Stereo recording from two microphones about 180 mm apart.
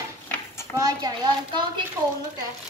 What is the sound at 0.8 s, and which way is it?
Speech, 20° right (ahead or behind).